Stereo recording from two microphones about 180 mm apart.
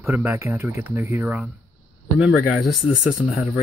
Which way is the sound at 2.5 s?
Centre (ahead or behind).